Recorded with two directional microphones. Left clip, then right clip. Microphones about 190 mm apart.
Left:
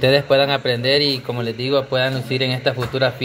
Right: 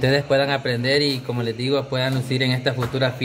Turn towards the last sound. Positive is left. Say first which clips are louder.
# left 3 dB
turn(degrees=-10)  # may be behind; listen again after turning